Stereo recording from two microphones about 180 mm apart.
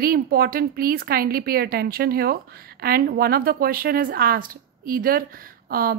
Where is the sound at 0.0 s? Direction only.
55° right (ahead or behind).